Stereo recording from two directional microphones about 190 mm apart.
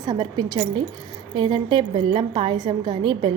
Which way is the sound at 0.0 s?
20° right (ahead or behind).